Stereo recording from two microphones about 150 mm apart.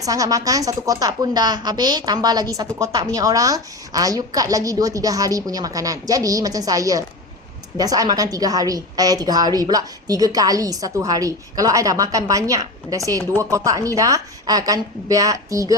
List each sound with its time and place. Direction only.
0.0 s a woman's voice: 25° right (ahead or behind)